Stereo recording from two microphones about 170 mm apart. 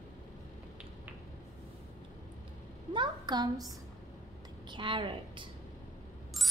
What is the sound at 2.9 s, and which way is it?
Speech, 25° right (ahead or behind).